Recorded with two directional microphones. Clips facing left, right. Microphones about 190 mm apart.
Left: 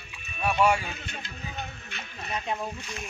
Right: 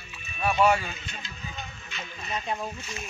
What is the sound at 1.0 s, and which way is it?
Music, 60° left (ahead or behind).